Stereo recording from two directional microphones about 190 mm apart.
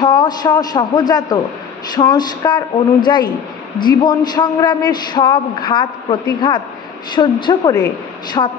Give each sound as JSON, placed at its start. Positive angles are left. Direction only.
{"t": 0.0, "sound": "a man's voice", "side_deg": 20}